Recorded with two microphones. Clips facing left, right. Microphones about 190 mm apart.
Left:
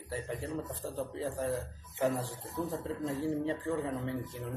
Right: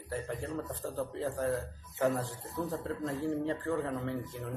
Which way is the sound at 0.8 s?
10° left (ahead or behind).